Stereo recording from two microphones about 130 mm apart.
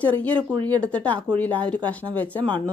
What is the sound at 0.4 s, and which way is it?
Speech, 40° right (ahead or behind).